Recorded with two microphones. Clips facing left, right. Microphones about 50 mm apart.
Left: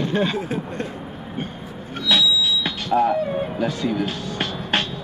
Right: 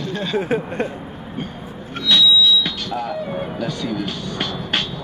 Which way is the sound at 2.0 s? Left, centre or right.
Centre.